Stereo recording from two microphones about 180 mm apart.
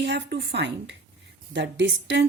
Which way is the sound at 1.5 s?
85° right.